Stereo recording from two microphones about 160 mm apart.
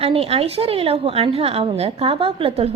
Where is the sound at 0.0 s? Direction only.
40° right (ahead or behind).